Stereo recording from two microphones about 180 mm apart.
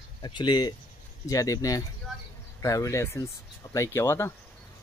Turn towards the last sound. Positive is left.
turn(degrees=15)  # may be behind; listen again after turning